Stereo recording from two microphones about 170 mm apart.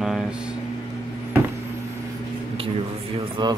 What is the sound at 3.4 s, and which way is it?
Speech, 25° right (ahead or behind).